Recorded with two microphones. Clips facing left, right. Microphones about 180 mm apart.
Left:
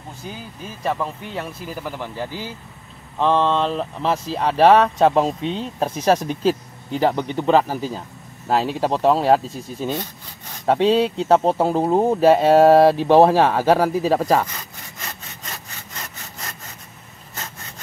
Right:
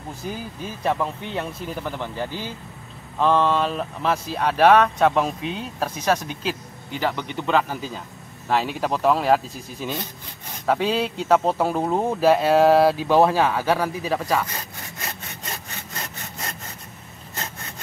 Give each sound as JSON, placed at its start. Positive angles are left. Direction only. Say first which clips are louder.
{"t": 0.8, "sound": "speech", "louder": "even", "side_deg": 0}
{"t": 3.2, "sound": "speech", "louder": "left 1 dB", "side_deg": 20}